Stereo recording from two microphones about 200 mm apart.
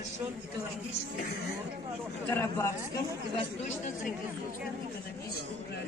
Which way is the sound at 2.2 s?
10° left (ahead or behind).